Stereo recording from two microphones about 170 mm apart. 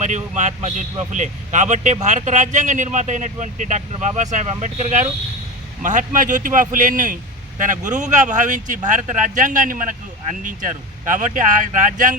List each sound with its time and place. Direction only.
0.0 s speech: 45° right (ahead or behind)
11.1 s speech: 50° right (ahead or behind)